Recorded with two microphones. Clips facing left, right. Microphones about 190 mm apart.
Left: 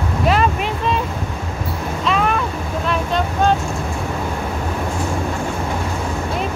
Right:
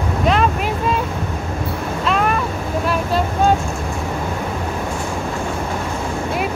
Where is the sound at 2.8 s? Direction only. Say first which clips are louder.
Even; 5° right (ahead or behind).